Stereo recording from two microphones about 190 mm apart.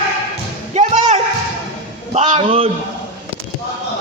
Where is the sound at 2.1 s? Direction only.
40° right (ahead or behind).